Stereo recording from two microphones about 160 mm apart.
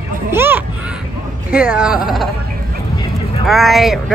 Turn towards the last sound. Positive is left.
turn(degrees=0)  # may be behind; listen again after turning